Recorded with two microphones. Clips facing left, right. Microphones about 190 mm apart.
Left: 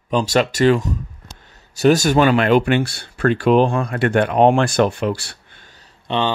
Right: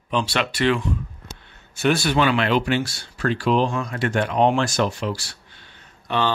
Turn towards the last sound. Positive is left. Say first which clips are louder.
# left 2 dB
turn(degrees=20)  # may be behind; listen again after turning